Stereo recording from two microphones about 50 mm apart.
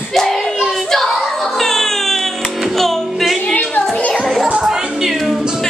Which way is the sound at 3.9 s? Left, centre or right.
Left.